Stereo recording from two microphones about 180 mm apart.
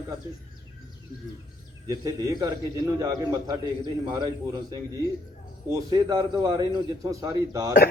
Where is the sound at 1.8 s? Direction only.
20° right (ahead or behind).